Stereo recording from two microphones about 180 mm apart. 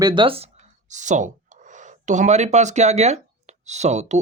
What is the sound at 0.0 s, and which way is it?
Speech, 25° right (ahead or behind).